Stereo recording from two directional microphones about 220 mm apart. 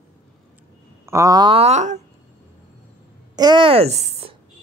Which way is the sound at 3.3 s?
20° right (ahead or behind).